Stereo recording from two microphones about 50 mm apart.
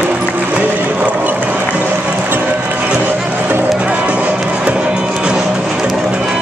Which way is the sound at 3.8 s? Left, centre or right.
Right.